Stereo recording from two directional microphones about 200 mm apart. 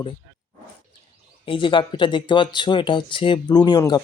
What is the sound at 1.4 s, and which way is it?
Speech, 25° left (ahead or behind).